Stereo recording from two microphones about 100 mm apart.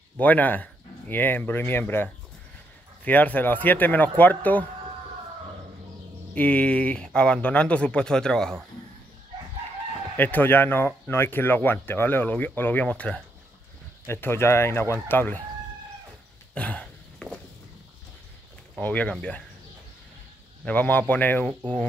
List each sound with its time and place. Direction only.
0.2 s speech: 15° left (ahead or behind)
3.1 s speech: 15° left (ahead or behind)
6.3 s speech: 15° left (ahead or behind)
10.1 s speech: 20° left (ahead or behind)
14.0 s speech: 25° left (ahead or behind)
16.5 s a sound: 10° left (ahead or behind)
18.8 s speech: 15° left (ahead or behind)
20.6 s speech: 15° left (ahead or behind)